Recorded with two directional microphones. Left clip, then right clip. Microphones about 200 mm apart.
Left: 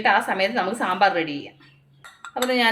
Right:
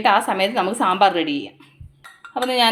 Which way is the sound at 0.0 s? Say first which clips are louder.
Right 3 dB; 35° right (ahead or behind).